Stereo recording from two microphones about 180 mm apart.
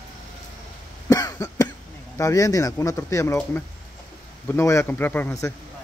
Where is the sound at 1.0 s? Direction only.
20° left (ahead or behind).